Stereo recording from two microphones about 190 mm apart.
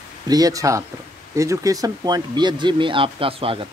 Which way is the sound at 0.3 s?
20° right (ahead or behind).